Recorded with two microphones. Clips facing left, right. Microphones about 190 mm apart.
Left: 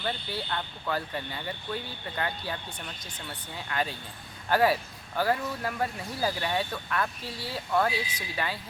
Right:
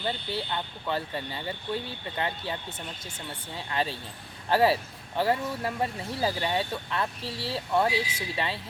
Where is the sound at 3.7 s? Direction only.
30° right (ahead or behind).